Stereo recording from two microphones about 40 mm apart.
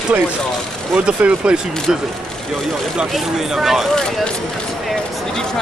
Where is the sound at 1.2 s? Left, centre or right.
Right.